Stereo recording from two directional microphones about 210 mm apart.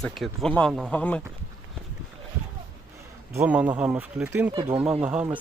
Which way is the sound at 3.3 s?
10° right (ahead or behind).